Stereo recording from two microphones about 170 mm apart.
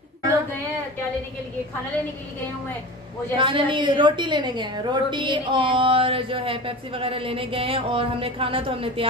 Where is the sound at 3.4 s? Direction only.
30° right (ahead or behind).